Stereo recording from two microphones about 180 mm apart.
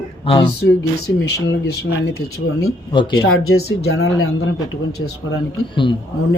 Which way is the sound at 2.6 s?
25° left (ahead or behind).